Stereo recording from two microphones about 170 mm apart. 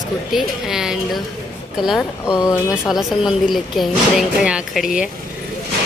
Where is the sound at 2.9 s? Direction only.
Centre (ahead or behind).